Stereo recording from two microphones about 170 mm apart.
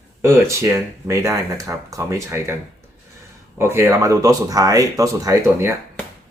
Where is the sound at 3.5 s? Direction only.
15° right (ahead or behind).